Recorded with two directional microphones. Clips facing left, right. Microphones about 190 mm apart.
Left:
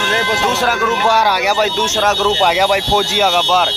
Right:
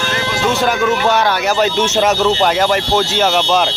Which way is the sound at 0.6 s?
5° left (ahead or behind).